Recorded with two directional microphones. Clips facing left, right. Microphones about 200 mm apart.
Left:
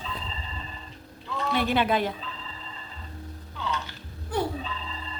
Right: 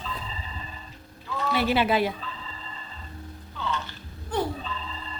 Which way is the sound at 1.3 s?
Centre (ahead or behind).